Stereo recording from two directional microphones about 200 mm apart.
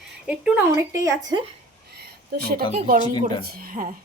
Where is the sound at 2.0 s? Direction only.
50° right (ahead or behind).